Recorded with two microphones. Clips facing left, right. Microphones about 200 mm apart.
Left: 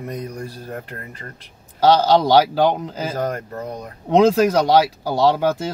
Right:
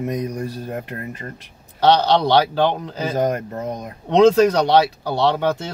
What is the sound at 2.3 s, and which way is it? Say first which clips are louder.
Speech: left 2 dB; 10° left (ahead or behind).